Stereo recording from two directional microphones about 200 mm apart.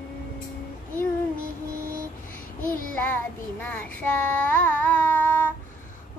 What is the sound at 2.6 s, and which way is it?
Child singing, 45° left (ahead or behind).